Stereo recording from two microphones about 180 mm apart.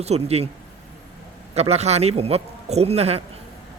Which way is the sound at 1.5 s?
35° right (ahead or behind).